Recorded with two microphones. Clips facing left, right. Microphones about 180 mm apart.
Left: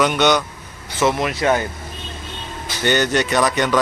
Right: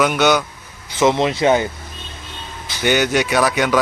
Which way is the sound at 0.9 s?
20° right (ahead or behind).